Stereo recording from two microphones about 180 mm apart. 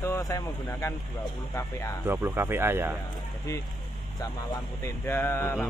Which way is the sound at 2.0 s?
10° right (ahead or behind).